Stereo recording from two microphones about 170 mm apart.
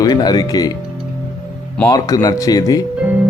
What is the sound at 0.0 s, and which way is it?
Speech, 25° left (ahead or behind).